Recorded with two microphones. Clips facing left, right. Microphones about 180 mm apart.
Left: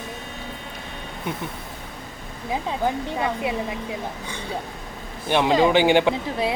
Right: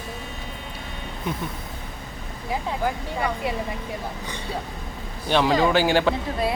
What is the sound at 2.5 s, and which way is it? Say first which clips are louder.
Speech: left 2 dB; 20° left (ahead or behind).